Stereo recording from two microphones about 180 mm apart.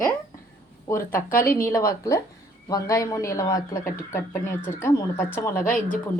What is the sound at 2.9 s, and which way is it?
Speech, 15° left (ahead or behind).